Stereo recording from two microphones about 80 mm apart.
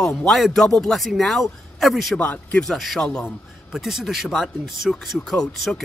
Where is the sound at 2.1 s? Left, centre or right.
Centre.